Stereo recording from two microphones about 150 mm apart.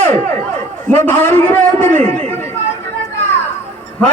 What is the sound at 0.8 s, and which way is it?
A man's voice, 10° left (ahead or behind).